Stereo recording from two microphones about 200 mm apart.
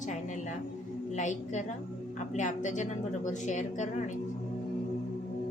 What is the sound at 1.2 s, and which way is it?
A woman's voice, 35° left (ahead or behind).